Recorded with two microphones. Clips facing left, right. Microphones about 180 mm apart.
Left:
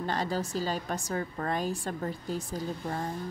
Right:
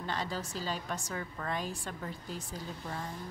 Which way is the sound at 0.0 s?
40° left (ahead or behind).